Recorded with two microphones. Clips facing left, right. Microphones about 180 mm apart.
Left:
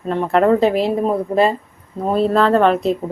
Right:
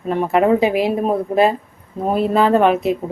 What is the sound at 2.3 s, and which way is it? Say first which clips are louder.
Speech: right 1 dB; 10° right (ahead or behind).